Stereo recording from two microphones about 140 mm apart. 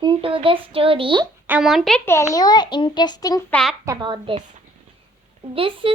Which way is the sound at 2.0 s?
20° left (ahead or behind).